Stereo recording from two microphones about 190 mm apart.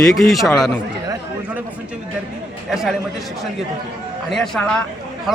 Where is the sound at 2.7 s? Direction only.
Centre (ahead or behind).